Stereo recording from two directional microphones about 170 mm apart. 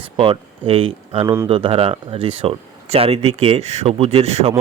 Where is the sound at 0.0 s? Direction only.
30° right (ahead or behind).